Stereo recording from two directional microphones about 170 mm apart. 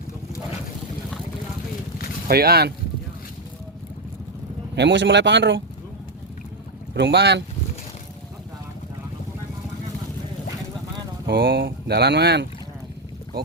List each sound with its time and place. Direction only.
2.2 s speech: 65° right (ahead or behind)
4.7 s a man's voice: 90° right
6.9 s speech: 85° right
11.3 s speech: 65° right (ahead or behind); by 12.5 s 85° right